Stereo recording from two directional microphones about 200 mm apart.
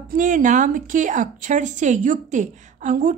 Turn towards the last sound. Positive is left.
turn(degrees=-40)  # may be behind; listen again after turning